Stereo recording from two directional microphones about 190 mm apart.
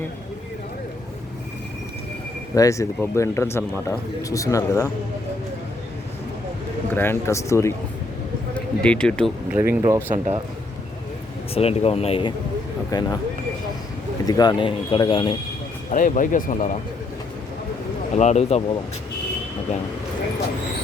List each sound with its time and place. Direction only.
2.6 s speech: 15° left (ahead or behind)
6.9 s speech: 10° left (ahead or behind)
9.5 s speech: 10° right (ahead or behind)
11.5 s speech: 30° left (ahead or behind)
12.9 s speech: 20° left (ahead or behind)
14.3 s speech: 20° left (ahead or behind)
15.9 s speech: 45° left (ahead or behind)
18.2 s speech: 35° left (ahead or behind)